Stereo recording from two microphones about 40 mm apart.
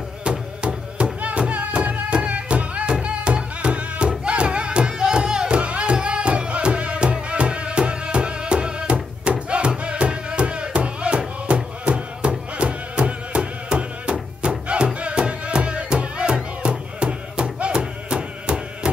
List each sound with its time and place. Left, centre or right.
0.2 s music: right